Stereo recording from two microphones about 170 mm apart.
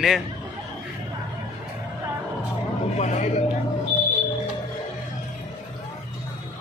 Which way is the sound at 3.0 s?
45° left (ahead or behind).